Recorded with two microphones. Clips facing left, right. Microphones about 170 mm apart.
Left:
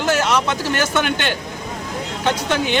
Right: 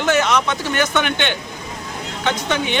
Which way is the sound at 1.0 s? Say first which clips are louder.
Even; 35° left (ahead or behind).